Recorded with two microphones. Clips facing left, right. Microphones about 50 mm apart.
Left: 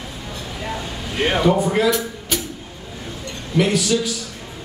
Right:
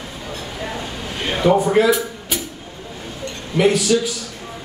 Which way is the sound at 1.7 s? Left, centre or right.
Centre.